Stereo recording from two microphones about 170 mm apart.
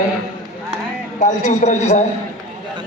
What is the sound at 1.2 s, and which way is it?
Speech, 45° left (ahead or behind).